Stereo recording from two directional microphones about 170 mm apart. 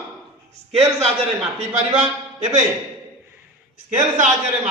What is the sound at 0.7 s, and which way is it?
A man's voice, 35° right (ahead or behind).